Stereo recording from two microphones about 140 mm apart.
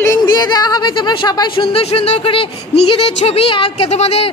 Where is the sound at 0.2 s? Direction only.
30° left (ahead or behind).